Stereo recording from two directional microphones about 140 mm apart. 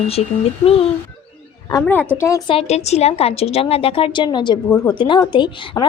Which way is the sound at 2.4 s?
45° left (ahead or behind).